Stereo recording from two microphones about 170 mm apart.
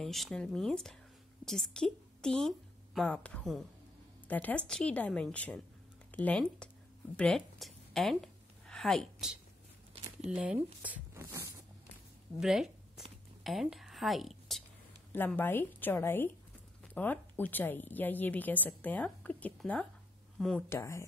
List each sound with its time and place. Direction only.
0.0 s a woman's voice: centre (ahead or behind)
7.2 s a sound: 5° left (ahead or behind)
10.3 s speech: 5° right (ahead or behind)
10.8 s zipper: 10° right (ahead or behind)
12.4 s a sound: 5° right (ahead or behind)
15.1 s a woman's voice: 10° left (ahead or behind)
20.7 s a woman's voice: 15° left (ahead or behind)